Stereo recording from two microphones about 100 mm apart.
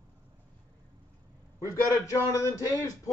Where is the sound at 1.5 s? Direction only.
30° left (ahead or behind).